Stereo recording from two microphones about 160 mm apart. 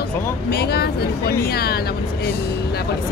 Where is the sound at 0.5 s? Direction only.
80° left.